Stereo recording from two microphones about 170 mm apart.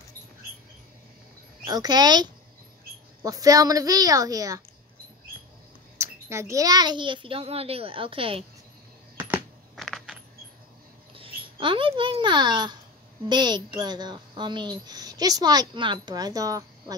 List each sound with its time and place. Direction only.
1.6 s a woman's voice: 25° right (ahead or behind)
5.9 s a child's voice: 15° right (ahead or behind); by 8.5 s 35° right (ahead or behind)
9.1 s a sound: 10° right (ahead or behind)
9.8 s coin: centre (ahead or behind)
11.1 s a child's voice: 30° right (ahead or behind)